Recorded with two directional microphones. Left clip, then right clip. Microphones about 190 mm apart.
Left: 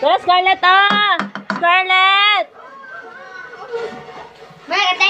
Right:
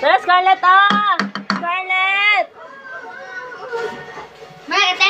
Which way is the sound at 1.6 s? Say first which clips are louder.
Left 7 dB; 50° left (ahead or behind).